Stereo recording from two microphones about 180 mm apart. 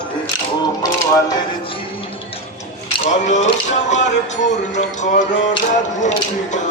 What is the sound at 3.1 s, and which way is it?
Music, 40° left (ahead or behind).